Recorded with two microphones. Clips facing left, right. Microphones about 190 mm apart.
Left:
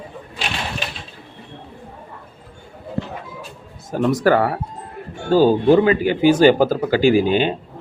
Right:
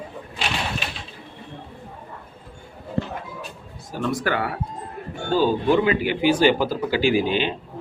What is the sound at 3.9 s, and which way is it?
Speech, 40° left (ahead or behind).